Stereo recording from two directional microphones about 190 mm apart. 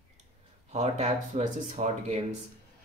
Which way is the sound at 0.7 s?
35° right (ahead or behind).